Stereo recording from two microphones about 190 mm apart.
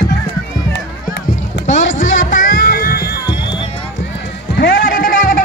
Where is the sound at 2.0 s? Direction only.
40° left (ahead or behind).